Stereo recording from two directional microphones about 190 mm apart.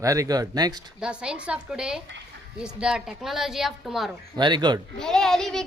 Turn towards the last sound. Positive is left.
turn(degrees=5)  # may be behind; listen again after turning